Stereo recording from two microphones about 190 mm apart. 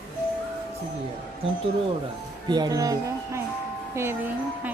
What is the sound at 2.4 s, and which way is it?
Speech, 25° right (ahead or behind).